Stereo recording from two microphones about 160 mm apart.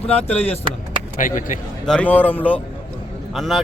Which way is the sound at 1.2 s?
55° left (ahead or behind).